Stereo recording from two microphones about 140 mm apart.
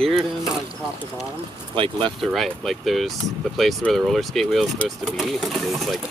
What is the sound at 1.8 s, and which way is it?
Speech, 35° right (ahead or behind).